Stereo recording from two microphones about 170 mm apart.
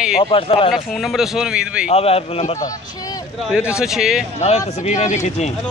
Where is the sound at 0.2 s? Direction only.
30° left (ahead or behind).